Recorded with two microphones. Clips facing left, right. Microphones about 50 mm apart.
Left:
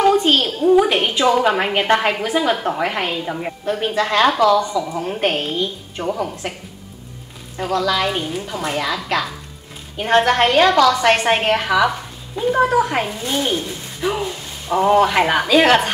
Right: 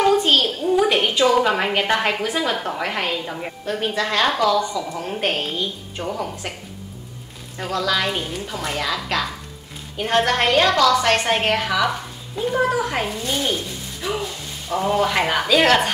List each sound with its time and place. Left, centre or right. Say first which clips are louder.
0.0 s a sound: left 2 dB; centre
1.4 s a woman's voice: left 2 dB; centre
9.9 s a woman's voice: left 4 dB; left
11.9 s frying: left 1 dB; centre
12.7 s a woman's voice: left 5 dB; centre